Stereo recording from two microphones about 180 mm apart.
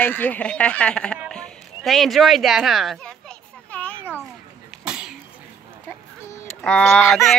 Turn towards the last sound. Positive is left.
turn(degrees=0)  # may be behind; listen again after turning